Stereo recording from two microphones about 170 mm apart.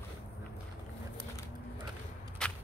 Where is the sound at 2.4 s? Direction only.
5° left (ahead or behind).